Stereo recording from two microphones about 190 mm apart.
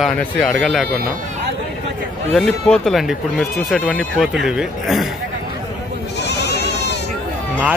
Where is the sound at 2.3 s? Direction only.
5° left (ahead or behind).